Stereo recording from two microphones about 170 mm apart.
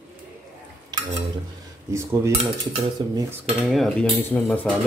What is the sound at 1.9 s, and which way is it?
Cutlery, 15° right (ahead or behind).